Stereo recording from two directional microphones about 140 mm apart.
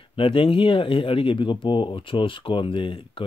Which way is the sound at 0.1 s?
40° left (ahead or behind).